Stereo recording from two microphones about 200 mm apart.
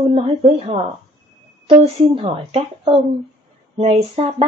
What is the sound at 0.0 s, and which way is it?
A woman's voice, 25° right (ahead or behind).